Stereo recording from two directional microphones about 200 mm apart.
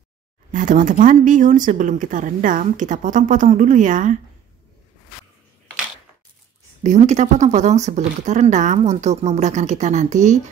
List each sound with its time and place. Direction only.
0.5 s speech: 40° right (ahead or behind)
6.8 s speech: 35° right (ahead or behind)